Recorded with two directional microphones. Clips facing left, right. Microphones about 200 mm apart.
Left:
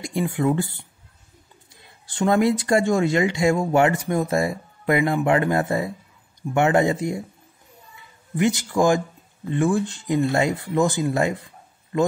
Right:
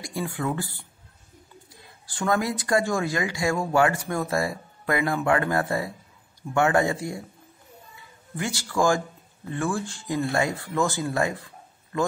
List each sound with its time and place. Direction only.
0.0 s speech: 20° left (ahead or behind)
2.0 s speech: 25° left (ahead or behind)
8.4 s speech: 20° left (ahead or behind)